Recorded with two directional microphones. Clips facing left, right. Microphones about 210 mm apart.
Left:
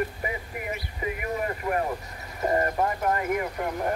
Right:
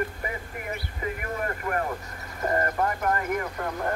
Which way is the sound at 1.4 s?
20° left (ahead or behind).